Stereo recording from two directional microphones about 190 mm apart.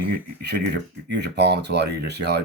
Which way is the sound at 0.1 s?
60° right (ahead or behind).